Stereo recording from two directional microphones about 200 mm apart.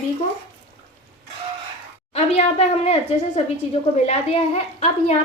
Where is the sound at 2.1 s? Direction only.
30° left (ahead or behind).